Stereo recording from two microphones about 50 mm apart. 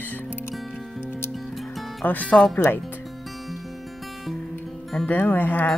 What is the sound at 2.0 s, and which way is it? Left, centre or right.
Speech, left.